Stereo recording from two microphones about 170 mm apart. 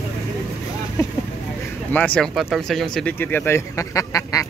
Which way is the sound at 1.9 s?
10° left (ahead or behind).